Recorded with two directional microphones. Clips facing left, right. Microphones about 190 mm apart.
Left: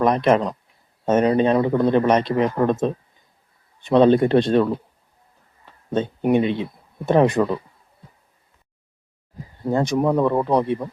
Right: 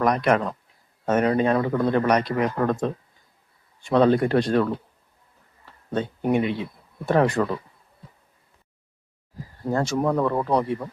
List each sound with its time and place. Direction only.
0.0 s a man's voice: 25° left (ahead or behind)
5.9 s speech: 20° left (ahead or behind)
9.6 s speech: 20° left (ahead or behind)